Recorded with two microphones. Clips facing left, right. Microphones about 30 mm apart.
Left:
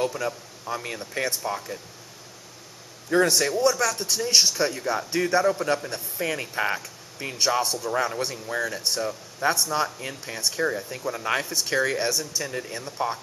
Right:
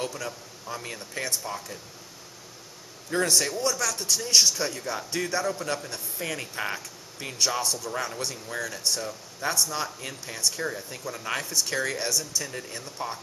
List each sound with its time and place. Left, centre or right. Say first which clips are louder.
0.0 s speech: left 6 dB; centre
3.1 s speech: left 4 dB; centre